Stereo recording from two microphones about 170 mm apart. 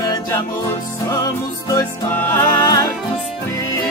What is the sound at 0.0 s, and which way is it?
Music, 20° left (ahead or behind).